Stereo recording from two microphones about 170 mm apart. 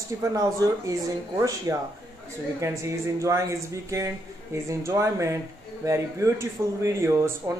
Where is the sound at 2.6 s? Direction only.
15° right (ahead or behind).